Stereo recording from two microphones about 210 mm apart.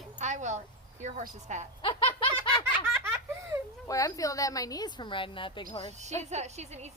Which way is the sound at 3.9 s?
15° left (ahead or behind).